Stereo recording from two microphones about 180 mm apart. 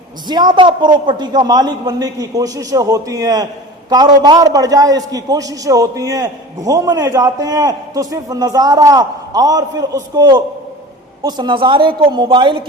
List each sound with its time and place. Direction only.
0.3 s a man's voice: 25° right (ahead or behind)